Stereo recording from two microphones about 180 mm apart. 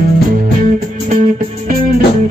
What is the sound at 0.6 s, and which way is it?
Music, 45° right (ahead or behind).